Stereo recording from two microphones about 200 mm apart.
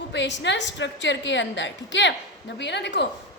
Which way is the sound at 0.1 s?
60° left (ahead or behind).